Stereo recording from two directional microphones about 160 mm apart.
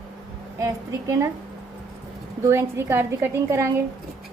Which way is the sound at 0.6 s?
20° right (ahead or behind).